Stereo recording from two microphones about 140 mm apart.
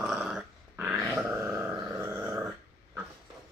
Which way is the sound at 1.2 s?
25° right (ahead or behind).